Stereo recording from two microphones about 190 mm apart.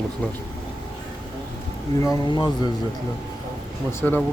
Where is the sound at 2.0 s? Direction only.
25° left (ahead or behind).